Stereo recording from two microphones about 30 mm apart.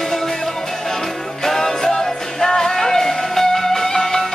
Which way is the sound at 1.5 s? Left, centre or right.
Centre.